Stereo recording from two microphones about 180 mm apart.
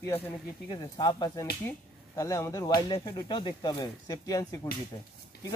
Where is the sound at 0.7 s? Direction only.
20° left (ahead or behind).